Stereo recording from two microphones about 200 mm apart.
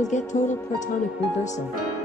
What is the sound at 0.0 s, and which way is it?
Music, 35° left (ahead or behind).